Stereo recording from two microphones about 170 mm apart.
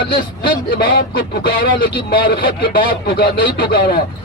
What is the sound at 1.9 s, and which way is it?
Speech, 30° left (ahead or behind).